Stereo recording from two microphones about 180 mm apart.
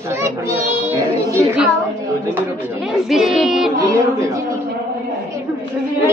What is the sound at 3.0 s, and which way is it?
Child singing, centre (ahead or behind).